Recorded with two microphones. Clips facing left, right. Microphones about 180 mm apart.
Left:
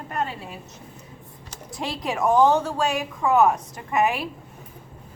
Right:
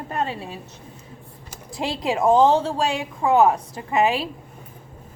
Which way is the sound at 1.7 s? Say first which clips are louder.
Right 4 dB; 25° right (ahead or behind).